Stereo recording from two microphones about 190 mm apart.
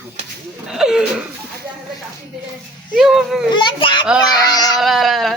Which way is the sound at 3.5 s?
25° left (ahead or behind).